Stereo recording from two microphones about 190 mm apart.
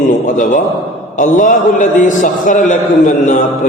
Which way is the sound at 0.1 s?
45° left (ahead or behind).